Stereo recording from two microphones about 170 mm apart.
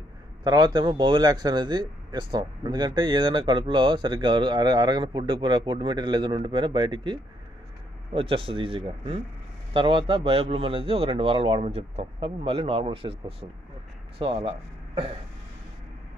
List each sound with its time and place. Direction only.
0.4 s a man's voice: 25° right (ahead or behind)